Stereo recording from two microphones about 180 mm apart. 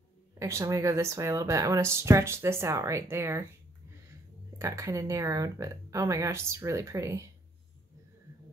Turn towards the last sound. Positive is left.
turn(degrees=-15)  # may be behind; listen again after turning